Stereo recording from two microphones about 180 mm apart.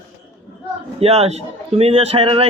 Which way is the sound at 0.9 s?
35° right (ahead or behind).